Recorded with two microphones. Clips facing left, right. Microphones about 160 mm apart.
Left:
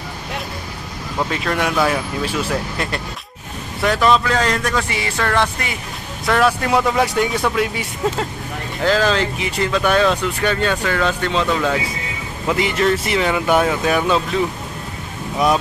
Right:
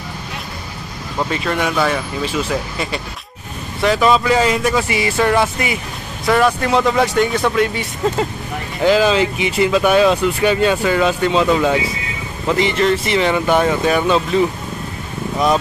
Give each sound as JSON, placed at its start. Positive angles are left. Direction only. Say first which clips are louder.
{"t": 1.3, "sound": "speech", "louder": "right 1 dB", "side_deg": 0}
{"t": 8.8, "sound": "speech", "louder": "right 4 dB", "side_deg": -5}
{"t": 12.4, "sound": "speech", "louder": "right 2 dB", "side_deg": 5}
{"t": 15.3, "sound": "speech", "louder": "right 1 dB", "side_deg": 5}